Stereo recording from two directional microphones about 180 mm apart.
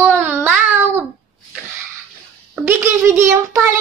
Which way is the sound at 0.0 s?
10° right (ahead or behind).